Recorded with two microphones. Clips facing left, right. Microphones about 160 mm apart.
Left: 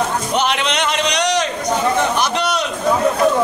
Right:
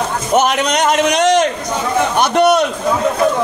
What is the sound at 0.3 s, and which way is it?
A man's voice, 45° right (ahead or behind).